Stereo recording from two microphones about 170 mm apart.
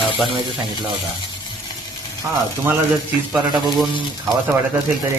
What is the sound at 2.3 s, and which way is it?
Speech, 15° right (ahead or behind).